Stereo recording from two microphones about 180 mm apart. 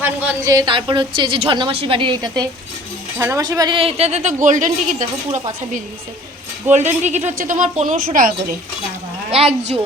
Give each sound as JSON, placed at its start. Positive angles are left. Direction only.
{"t": 0.0, "sound": "speech", "side_deg": -10}
{"t": 0.5, "sound": "a woman's voice", "side_deg": -25}
{"t": 9.3, "sound": "a woman's voice", "side_deg": -35}